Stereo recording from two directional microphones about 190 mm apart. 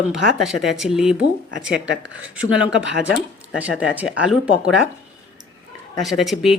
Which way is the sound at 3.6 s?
5° right (ahead or behind).